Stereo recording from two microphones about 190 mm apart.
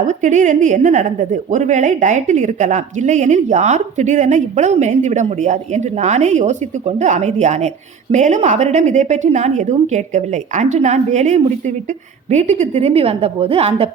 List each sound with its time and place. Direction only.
0.1 s a woman's voice: 40° right (ahead or behind)